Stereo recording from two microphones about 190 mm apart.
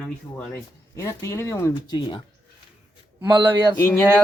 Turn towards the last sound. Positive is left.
turn(degrees=10)  # may be behind; listen again after turning